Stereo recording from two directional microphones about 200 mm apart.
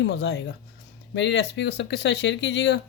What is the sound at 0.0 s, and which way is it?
Speech, 60° left (ahead or behind).